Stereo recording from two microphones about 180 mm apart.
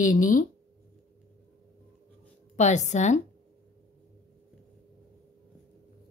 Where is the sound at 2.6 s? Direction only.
40° left (ahead or behind).